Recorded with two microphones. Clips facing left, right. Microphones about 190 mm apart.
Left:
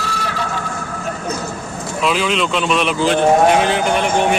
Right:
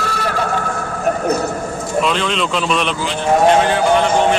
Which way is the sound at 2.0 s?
5° left (ahead or behind).